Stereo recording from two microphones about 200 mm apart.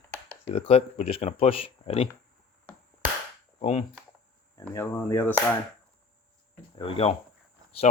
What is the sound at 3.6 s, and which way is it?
Speech, 35° left (ahead or behind).